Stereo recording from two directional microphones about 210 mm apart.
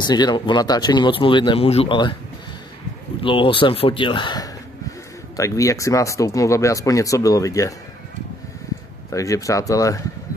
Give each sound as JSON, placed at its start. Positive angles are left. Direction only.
{"t": 0.0, "sound": "speech", "side_deg": 20}
{"t": 3.2, "sound": "speech", "side_deg": 25}
{"t": 9.1, "sound": "speech", "side_deg": 15}